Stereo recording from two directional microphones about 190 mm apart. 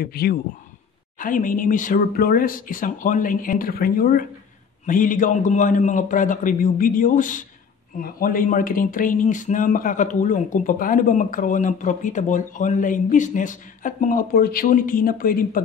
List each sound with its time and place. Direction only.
0.0 s speech: 55° left (ahead or behind)